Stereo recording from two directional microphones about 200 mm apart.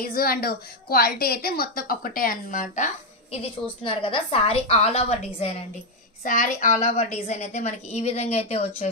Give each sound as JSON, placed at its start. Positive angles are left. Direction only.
{"t": 0.0, "sound": "a woman's voice", "side_deg": 50}